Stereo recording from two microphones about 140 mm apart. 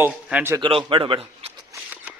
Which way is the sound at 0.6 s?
40° right (ahead or behind).